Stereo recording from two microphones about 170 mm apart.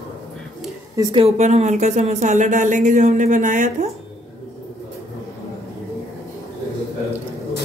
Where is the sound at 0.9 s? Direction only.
25° right (ahead or behind).